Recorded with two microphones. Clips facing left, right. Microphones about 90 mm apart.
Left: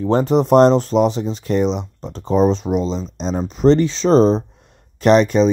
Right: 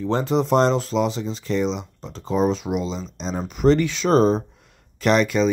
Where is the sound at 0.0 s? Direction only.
40° left (ahead or behind).